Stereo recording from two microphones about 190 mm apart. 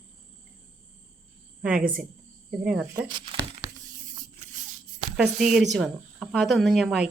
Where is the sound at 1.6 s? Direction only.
5° right (ahead or behind).